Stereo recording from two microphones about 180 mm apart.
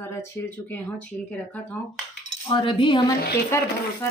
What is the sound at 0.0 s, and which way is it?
Speech, 15° left (ahead or behind).